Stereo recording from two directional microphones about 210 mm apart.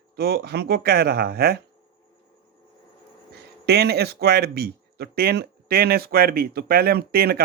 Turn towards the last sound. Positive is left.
turn(degrees=-45)  # may be behind; listen again after turning